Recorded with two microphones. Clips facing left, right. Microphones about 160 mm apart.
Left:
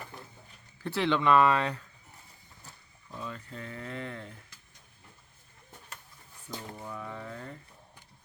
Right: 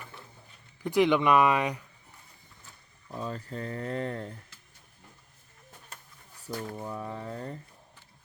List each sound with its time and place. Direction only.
0.8 s speech: 15° right (ahead or behind)
3.2 s speech: 40° right (ahead or behind)
6.5 s speech: 30° right (ahead or behind)